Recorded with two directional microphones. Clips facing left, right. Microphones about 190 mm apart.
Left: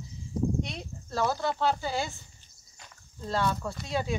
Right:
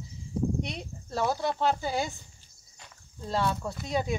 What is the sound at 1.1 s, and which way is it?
Speech, 15° right (ahead or behind).